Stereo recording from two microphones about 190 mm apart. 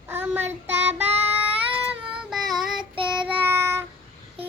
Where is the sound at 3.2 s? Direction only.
10° right (ahead or behind).